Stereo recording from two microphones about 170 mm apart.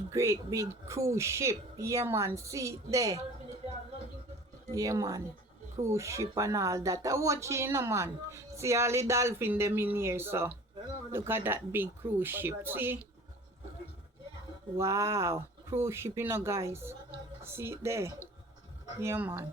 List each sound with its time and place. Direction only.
0.1 s speech: 15° right (ahead or behind)
4.7 s speech: 20° right (ahead or behind)
14.8 s speech: 15° right (ahead or behind)